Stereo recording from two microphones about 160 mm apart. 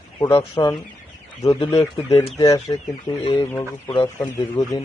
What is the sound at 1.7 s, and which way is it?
Speech, 20° left (ahead or behind).